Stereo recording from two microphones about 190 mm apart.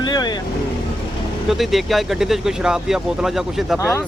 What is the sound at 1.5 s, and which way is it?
Speech, centre (ahead or behind).